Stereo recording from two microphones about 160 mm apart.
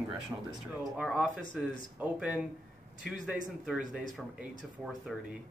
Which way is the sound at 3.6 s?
5° right (ahead or behind).